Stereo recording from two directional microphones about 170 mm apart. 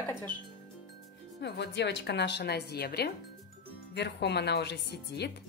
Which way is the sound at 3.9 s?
80° left.